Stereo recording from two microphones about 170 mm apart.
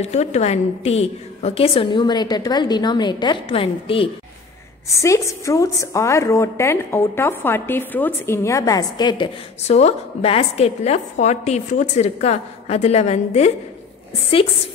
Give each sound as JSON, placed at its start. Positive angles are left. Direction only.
{"t": 0.0, "sound": "a woman's voice", "side_deg": 40}
{"t": 4.8, "sound": "a woman's voice", "side_deg": 15}
{"t": 9.6, "sound": "a woman's voice", "side_deg": 40}